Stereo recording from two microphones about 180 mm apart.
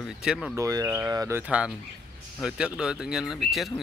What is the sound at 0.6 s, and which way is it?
Speech, 20° right (ahead or behind).